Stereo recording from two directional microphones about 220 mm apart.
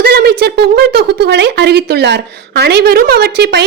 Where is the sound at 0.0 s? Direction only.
45° right (ahead or behind).